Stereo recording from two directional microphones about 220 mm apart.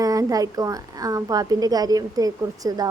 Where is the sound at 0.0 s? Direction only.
15° right (ahead or behind).